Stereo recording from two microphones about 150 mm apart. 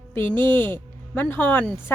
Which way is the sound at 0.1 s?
15° left (ahead or behind).